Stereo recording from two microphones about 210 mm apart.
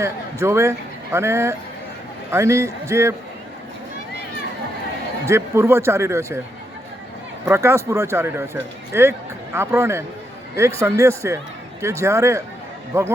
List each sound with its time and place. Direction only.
0.0 s a man's voice: 15° right (ahead or behind)
5.2 s speech: 15° right (ahead or behind)
7.4 s speech: 10° right (ahead or behind)